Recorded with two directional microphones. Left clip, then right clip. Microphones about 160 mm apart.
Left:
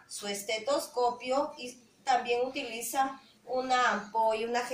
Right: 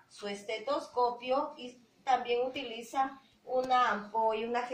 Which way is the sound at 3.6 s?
10° right (ahead or behind).